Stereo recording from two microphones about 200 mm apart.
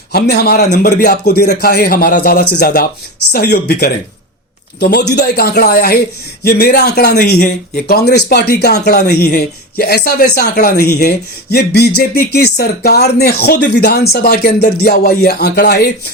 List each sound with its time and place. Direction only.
0.1 s speech: 50° left (ahead or behind)